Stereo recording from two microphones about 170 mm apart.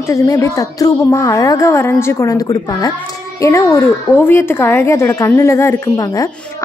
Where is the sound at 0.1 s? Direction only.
20° left (ahead or behind).